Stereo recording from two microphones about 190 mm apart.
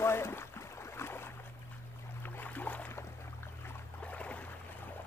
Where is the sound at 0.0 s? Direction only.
15° left (ahead or behind).